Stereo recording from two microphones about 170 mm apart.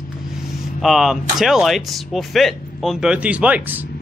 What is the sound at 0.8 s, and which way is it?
Speech, centre (ahead or behind).